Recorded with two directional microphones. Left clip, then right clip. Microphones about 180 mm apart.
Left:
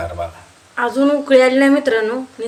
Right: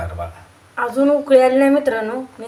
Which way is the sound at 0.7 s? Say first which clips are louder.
Even; 5° left (ahead or behind).